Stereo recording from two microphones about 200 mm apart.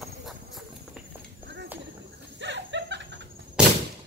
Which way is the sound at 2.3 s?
60° right (ahead or behind).